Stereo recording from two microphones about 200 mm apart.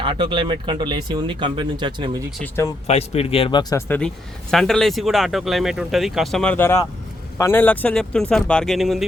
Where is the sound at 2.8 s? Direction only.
30° left (ahead or behind).